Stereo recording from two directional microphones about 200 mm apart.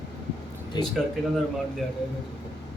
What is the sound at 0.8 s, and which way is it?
Speech, 20° left (ahead or behind).